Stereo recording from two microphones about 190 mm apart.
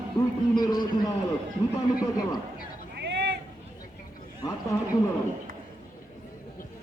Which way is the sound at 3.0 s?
60° right (ahead or behind).